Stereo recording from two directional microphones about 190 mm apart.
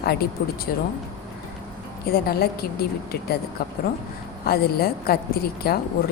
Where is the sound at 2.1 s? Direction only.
55° left (ahead or behind).